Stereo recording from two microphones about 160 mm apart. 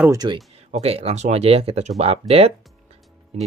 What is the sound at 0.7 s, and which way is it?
Speech, 40° right (ahead or behind).